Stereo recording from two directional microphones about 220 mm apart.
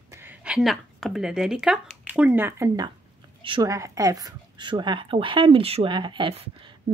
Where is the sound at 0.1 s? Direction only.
10° right (ahead or behind).